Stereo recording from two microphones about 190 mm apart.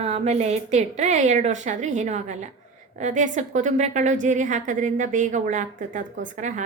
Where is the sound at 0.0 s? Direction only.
35° right (ahead or behind).